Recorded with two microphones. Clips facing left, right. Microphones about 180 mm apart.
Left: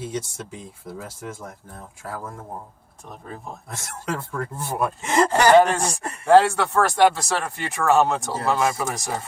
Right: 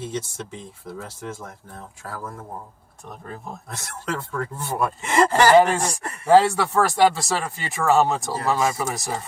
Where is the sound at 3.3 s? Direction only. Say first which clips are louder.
Even; centre (ahead or behind).